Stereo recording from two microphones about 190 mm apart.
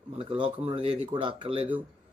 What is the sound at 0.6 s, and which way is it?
Speech, 25° right (ahead or behind).